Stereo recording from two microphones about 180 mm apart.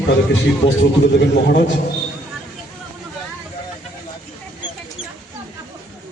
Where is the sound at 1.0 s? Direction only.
70° left (ahead or behind).